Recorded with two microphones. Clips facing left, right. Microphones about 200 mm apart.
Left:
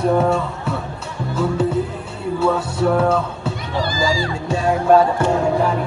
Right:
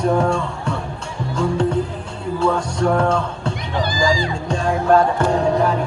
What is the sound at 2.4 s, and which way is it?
Speech, 5° left (ahead or behind).